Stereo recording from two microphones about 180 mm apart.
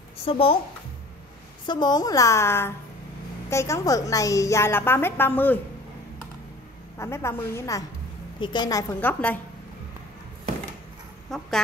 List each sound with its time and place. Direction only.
0.2 s speech: 30° left (ahead or behind)
1.7 s a woman's voice: 20° left (ahead or behind)
7.0 s a woman's voice: 15° left (ahead or behind)
11.2 s speech: 5° left (ahead or behind)